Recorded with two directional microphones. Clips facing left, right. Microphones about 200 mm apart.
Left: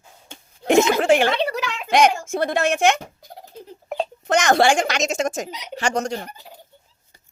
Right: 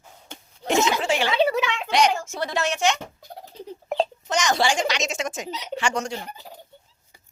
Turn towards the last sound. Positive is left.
turn(degrees=40)  # may be behind; listen again after turning